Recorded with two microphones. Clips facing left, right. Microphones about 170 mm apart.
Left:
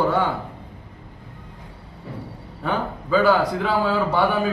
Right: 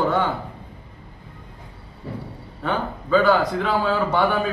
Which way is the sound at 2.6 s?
5° left (ahead or behind).